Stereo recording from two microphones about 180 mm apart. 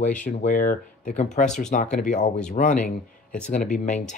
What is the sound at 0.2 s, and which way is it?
Speech, 45° left (ahead or behind).